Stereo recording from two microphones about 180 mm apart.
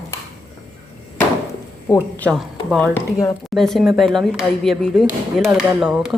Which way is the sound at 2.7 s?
5° left (ahead or behind).